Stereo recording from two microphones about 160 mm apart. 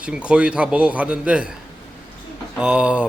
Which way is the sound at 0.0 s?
5° right (ahead or behind).